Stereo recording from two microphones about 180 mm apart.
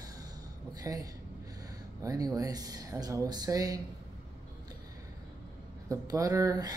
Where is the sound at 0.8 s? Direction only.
20° right (ahead or behind).